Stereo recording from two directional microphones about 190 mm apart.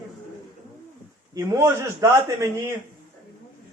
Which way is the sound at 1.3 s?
15° right (ahead or behind).